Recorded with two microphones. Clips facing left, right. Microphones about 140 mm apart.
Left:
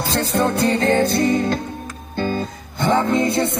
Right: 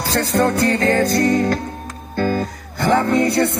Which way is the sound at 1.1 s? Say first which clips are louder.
Right 2 dB; 10° left (ahead or behind).